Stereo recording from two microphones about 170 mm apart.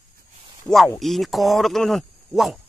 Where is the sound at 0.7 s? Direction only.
Centre (ahead or behind).